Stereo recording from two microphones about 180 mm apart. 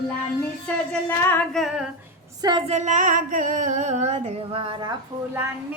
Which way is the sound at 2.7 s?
45° right (ahead or behind).